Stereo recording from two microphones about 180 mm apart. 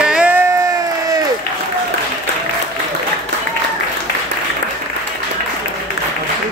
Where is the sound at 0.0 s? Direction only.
5° right (ahead or behind).